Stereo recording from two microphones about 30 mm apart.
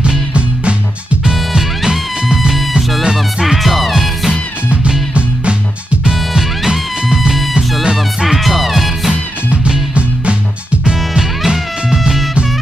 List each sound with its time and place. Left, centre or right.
3.4 s music: centre
5.1 s music: right
7.8 s music: right
8.3 s music: centre
9.9 s music: right
11.1 s music: centre